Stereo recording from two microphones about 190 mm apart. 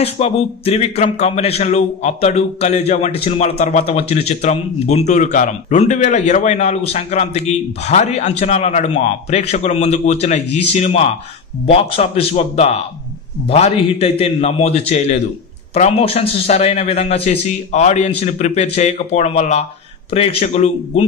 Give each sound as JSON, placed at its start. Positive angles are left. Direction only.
{"t": 0.0, "sound": "a man's voice", "side_deg": 35}